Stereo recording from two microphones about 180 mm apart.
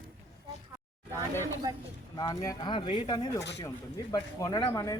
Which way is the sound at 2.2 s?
20° left (ahead or behind).